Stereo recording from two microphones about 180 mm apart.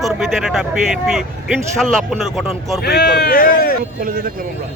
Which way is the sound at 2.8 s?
65° left (ahead or behind).